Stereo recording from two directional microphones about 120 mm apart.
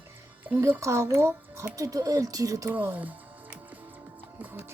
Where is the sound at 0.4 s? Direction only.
15° right (ahead or behind); by 2.6 s 30° right (ahead or behind).